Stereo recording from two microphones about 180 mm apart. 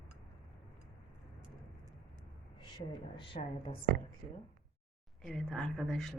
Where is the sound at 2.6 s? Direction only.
25° left (ahead or behind).